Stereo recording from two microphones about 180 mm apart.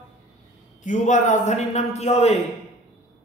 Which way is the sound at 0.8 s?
45° left (ahead or behind).